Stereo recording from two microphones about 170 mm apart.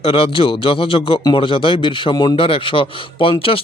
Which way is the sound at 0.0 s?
35° left (ahead or behind).